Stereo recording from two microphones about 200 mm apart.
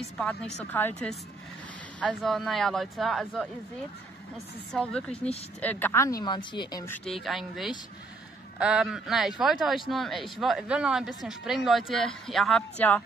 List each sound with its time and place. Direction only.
0.2 s speech: 5° left (ahead or behind)
4.7 s speech: 5° left (ahead or behind)
7.1 s speech: centre (ahead or behind)